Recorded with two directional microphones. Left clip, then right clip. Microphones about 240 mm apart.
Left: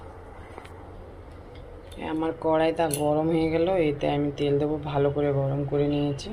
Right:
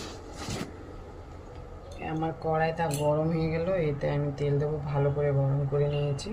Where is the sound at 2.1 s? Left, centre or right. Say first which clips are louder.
Left 5 dB; left.